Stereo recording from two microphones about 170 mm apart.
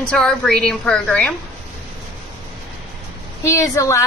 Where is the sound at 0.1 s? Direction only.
5° left (ahead or behind).